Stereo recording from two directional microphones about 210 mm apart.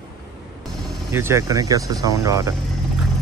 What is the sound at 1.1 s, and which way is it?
Speech, 10° right (ahead or behind).